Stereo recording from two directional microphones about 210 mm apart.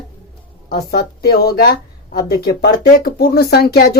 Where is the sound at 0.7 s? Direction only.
50° left (ahead or behind).